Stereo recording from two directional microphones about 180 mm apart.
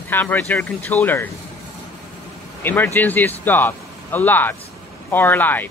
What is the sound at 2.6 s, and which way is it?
Speech, 10° left (ahead or behind).